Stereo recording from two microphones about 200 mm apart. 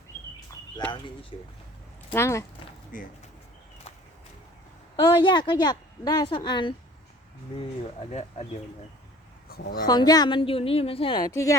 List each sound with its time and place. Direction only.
0.9 s a woman's voice: 25° left (ahead or behind)
2.1 s speech: 15° left (ahead or behind)
2.9 s speech: 45° left (ahead or behind)
4.9 s a woman's voice: 25° left (ahead or behind)
9.5 s a sound: 50° left (ahead or behind)
9.8 s a woman's voice: 20° left (ahead or behind)